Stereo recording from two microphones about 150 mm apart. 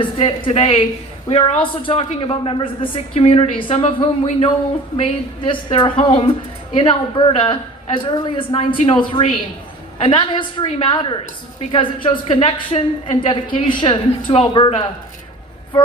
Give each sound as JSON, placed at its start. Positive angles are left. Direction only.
{"t": 0.0, "sound": "a woman's voice", "side_deg": 35}
{"t": 15.7, "sound": "vehicle", "side_deg": 30}